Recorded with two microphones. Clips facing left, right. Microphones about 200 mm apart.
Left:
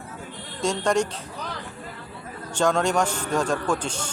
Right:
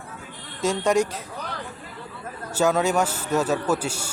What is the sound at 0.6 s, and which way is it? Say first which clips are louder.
Speech: right 2 dB; 5° right (ahead or behind).